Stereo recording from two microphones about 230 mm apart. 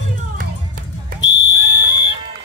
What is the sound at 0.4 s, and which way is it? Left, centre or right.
Music, right.